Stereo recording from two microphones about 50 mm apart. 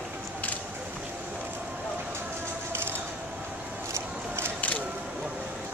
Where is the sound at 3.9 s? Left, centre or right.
Right.